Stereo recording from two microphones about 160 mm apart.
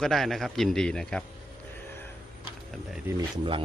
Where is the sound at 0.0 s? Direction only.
Centre (ahead or behind).